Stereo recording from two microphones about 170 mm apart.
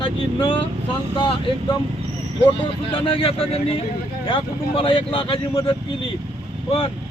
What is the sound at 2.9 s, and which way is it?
Speech, 30° left (ahead or behind).